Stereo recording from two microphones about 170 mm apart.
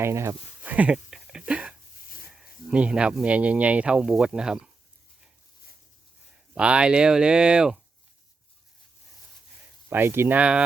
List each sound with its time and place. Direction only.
0.0 s a sound: 15° right (ahead or behind)
2.3 s speech: 5° right (ahead or behind)
6.5 s speech: 5° right (ahead or behind)
9.9 s speech: 15° right (ahead or behind)